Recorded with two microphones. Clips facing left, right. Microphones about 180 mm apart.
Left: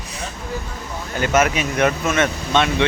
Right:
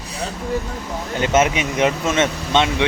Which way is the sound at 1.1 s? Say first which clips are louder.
Right 1 dB; 25° right (ahead or behind).